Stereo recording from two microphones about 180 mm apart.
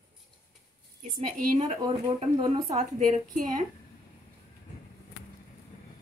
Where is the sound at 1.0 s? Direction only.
45° right (ahead or behind).